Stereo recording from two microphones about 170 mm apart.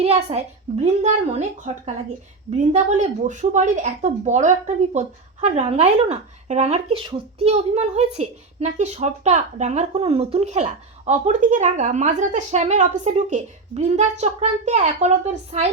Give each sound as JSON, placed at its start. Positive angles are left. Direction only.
{"t": 0.0, "sound": "a woman's voice", "side_deg": -40}